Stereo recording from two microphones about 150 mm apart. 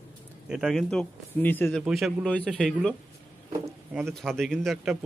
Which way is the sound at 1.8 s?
Centre (ahead or behind).